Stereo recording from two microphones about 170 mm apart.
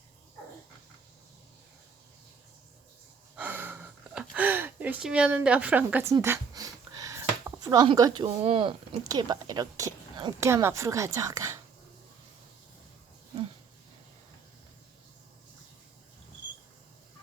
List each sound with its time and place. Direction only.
3.3 s gasp: 10° right (ahead or behind)
6.2 s a sound: 20° right (ahead or behind)
8.4 s a woman's voice: 35° right (ahead or behind)